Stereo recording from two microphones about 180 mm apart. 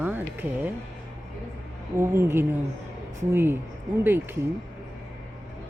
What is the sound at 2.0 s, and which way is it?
Speech, 15° right (ahead or behind).